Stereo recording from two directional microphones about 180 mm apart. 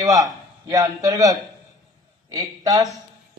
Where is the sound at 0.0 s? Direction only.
20° right (ahead or behind).